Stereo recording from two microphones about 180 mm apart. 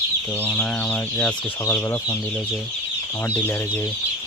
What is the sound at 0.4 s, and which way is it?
Speech, 10° left (ahead or behind).